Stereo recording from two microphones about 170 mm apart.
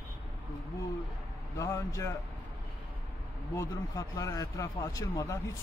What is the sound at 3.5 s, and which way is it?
A man's voice, 20° left (ahead or behind).